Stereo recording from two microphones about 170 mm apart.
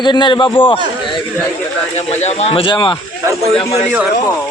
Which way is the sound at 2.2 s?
35° left (ahead or behind).